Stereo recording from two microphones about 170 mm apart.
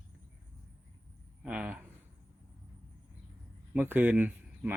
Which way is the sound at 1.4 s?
10° right (ahead or behind).